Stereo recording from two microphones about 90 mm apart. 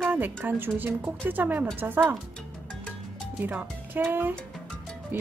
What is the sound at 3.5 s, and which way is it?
Speech, 20° right (ahead or behind).